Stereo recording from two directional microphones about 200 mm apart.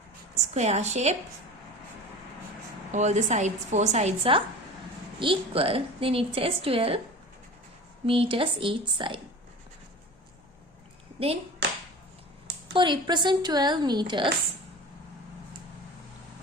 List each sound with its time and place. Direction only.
0.3 s a woman's voice: 35° right (ahead or behind)
2.9 s a woman's voice: 35° right (ahead or behind)
8.0 s a woman's voice: 30° right (ahead or behind)
12.7 s a woman's voice: 25° right (ahead or behind)